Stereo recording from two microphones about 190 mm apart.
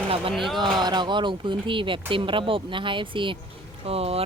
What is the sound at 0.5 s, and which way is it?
Speech, 25° right (ahead or behind).